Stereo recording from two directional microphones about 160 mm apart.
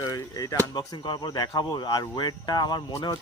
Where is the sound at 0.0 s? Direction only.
20° left (ahead or behind).